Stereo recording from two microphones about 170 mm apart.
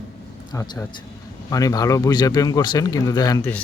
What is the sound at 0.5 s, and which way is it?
Speech, 15° left (ahead or behind).